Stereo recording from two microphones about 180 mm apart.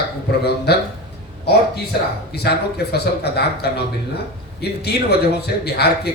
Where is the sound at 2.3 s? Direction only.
65° left (ahead or behind).